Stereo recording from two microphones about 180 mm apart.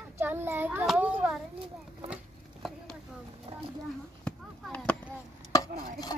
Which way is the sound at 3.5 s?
35° right (ahead or behind).